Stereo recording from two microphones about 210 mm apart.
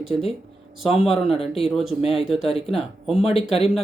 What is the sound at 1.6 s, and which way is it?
Speech, centre (ahead or behind).